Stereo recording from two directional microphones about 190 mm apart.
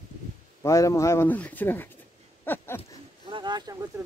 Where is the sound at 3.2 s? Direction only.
25° right (ahead or behind).